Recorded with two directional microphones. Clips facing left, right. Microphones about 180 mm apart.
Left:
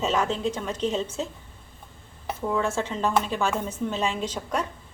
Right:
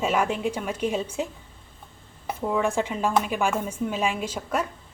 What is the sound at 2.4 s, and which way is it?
A woman's voice, 15° right (ahead or behind).